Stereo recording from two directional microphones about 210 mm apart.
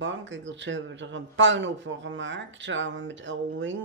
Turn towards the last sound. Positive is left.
turn(degrees=-65)  # may be behind; listen again after turning